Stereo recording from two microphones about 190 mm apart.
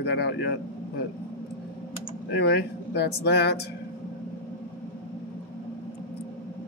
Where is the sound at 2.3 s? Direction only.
60° left (ahead or behind).